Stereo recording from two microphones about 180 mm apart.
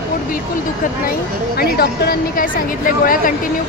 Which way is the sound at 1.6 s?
60° left (ahead or behind).